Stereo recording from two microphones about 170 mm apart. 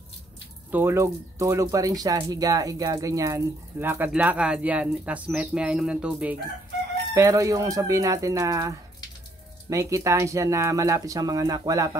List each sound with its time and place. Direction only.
0.7 s speech: 15° right (ahead or behind)
7.2 s speech: 20° right (ahead or behind)